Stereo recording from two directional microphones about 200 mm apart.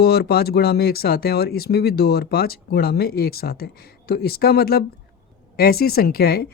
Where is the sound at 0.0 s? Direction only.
50° left (ahead or behind).